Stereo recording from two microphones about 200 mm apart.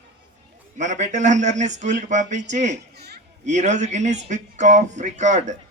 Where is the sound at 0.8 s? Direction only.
35° right (ahead or behind).